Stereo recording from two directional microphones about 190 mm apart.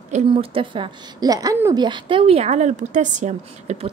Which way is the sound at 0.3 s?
25° right (ahead or behind).